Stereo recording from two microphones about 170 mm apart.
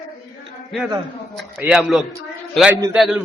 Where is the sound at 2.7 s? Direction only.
15° right (ahead or behind).